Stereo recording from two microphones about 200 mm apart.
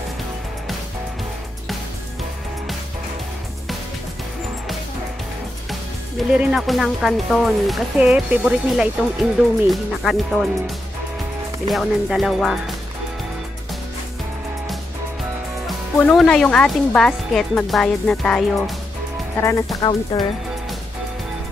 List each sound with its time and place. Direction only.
6.3 s speech: centre (ahead or behind)
11.7 s speech: centre (ahead or behind)
15.6 s speech: 5° left (ahead or behind)
19.8 s speech: 20° left (ahead or behind)